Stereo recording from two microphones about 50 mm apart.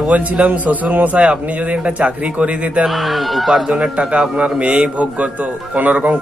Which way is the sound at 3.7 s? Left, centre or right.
Centre.